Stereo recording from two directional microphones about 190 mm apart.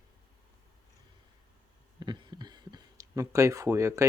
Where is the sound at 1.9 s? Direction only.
25° right (ahead or behind).